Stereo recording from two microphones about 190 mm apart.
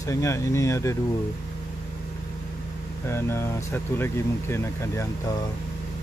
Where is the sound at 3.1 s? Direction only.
15° left (ahead or behind).